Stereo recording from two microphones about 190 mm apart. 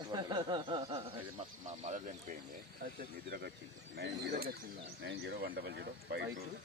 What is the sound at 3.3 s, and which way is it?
Speech, 55° right (ahead or behind).